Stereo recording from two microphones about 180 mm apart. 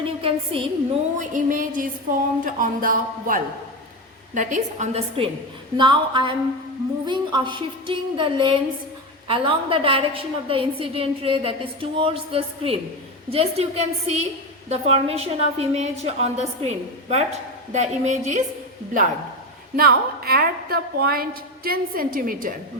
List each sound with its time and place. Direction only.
0.0 s a woman's voice: 30° right (ahead or behind)
1.2 s a woman's voice: 45° right (ahead or behind)
19.7 s a woman's voice: 60° right (ahead or behind)